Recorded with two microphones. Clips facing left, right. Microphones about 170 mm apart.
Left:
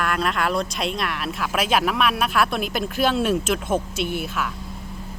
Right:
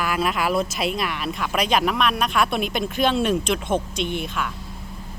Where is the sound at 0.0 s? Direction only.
5° right (ahead or behind).